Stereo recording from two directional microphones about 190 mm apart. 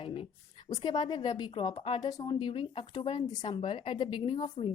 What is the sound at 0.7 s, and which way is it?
Speech, 20° left (ahead or behind).